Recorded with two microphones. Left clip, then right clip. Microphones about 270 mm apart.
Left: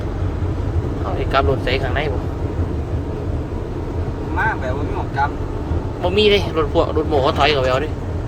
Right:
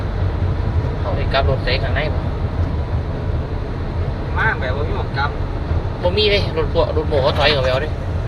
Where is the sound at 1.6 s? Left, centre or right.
Centre.